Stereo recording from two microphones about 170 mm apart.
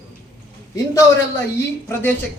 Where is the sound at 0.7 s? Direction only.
15° left (ahead or behind).